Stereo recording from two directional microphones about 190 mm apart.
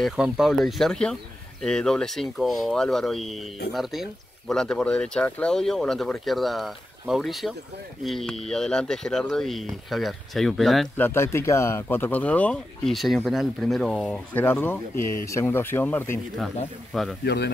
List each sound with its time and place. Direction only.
0.0 s speech: centre (ahead or behind)
11.1 s speech: 15° left (ahead or behind)
17.2 s a man's voice: 60° left (ahead or behind)